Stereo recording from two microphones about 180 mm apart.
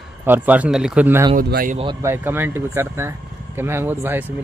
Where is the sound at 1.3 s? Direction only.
55° right (ahead or behind).